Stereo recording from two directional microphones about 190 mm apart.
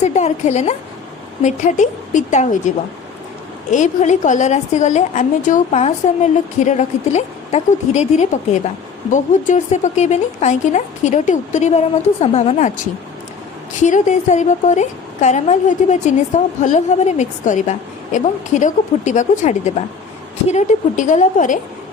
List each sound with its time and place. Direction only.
0.0 s a woman's voice: 35° left (ahead or behind)
3.7 s a woman's voice: 40° left (ahead or behind)